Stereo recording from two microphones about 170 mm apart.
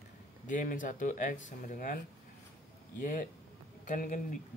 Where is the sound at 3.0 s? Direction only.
50° left (ahead or behind).